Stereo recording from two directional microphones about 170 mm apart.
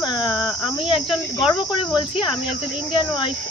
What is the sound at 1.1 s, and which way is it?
Cricket, centre (ahead or behind).